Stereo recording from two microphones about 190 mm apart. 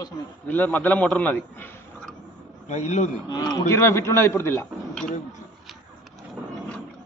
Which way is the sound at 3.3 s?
20° left (ahead or behind).